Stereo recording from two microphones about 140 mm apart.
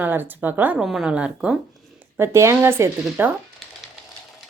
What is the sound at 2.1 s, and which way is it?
Speech, 20° right (ahead or behind).